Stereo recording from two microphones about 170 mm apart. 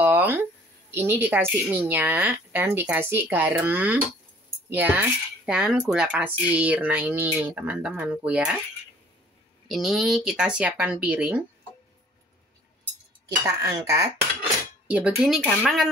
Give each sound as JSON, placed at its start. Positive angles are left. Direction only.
{"t": 0.0, "sound": "a sound", "side_deg": -10}
{"t": 0.9, "sound": "speech", "side_deg": -10}
{"t": 9.7, "sound": "speech", "side_deg": 0}
{"t": 13.6, "sound": "speech", "side_deg": -20}
{"t": 14.9, "sound": "speech", "side_deg": -10}